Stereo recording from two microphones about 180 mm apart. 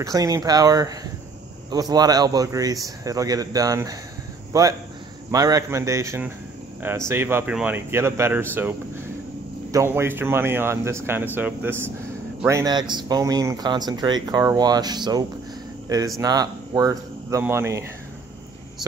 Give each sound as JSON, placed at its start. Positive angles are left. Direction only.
{"t": 0.0, "sound": "a man's voice", "side_deg": -20}
{"t": 9.7, "sound": "a man's voice", "side_deg": -15}